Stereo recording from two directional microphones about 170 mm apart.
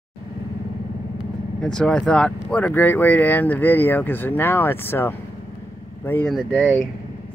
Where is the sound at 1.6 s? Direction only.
5° left (ahead or behind).